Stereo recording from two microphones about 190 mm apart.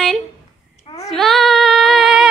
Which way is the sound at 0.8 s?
30° left (ahead or behind).